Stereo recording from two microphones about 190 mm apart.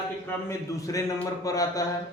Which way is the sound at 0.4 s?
15° left (ahead or behind).